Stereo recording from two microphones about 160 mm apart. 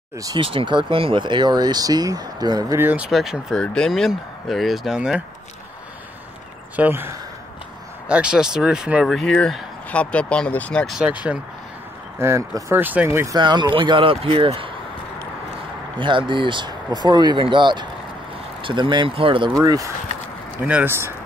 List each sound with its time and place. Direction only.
0.2 s speech: 30° right (ahead or behind)
2.8 s speech: 10° right (ahead or behind)
3.1 s speech: centre (ahead or behind)
6.8 s speech: 15° right (ahead or behind); by 11.0 s 5° left (ahead or behind)
11.0 s speech: 10° right (ahead or behind)
13.4 s speech: 30° right (ahead or behind)
16.0 s speech: 30° right (ahead or behind)
19.6 s speech: 25° right (ahead or behind)
20.6 s speech: 10° right (ahead or behind)